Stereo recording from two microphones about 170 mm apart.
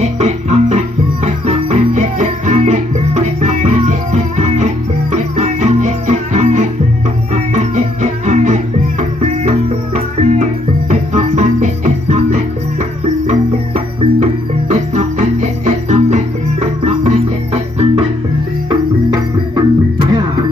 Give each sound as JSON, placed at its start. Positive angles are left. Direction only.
{"t": 0.0, "sound": "music", "side_deg": -40}
{"t": 18.7, "sound": "music", "side_deg": -25}